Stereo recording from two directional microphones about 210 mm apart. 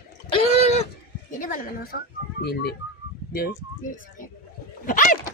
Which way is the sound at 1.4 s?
40° left (ahead or behind).